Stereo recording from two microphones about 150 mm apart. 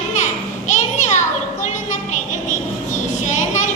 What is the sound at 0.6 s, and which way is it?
Children playing, 55° left (ahead or behind).